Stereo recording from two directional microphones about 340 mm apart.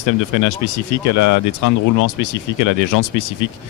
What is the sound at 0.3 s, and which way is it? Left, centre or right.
Speech, left.